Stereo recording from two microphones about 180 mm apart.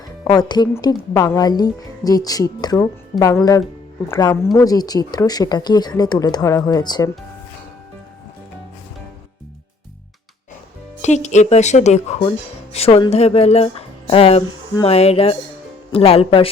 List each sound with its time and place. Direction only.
0.3 s speech: 25° left (ahead or behind)
11.0 s speech: 40° left (ahead or behind)